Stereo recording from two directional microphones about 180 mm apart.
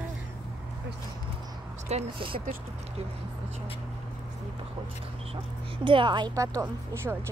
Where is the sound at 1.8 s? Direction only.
35° right (ahead or behind).